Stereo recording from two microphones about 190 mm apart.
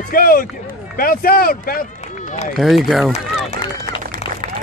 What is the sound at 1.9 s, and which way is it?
Run, 35° left (ahead or behind).